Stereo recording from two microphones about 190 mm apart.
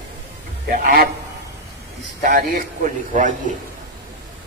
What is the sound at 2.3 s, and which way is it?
A man's voice, 45° right (ahead or behind).